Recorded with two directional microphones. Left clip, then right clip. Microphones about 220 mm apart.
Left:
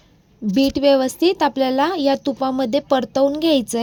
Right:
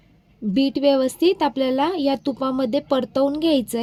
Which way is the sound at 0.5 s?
20° left (ahead or behind).